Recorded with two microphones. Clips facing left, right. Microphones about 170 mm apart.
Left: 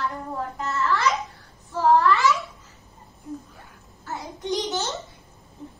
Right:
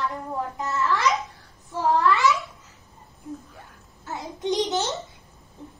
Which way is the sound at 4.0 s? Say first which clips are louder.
Right 3 dB; 20° right (ahead or behind).